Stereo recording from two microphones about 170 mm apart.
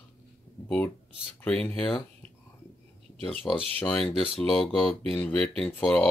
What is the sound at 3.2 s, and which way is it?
Speech, centre (ahead or behind).